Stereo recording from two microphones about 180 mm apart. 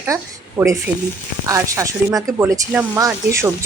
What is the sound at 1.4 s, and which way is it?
A woman's voice, 20° right (ahead or behind).